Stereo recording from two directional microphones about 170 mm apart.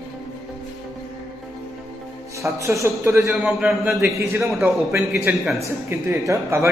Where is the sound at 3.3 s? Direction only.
Centre (ahead or behind).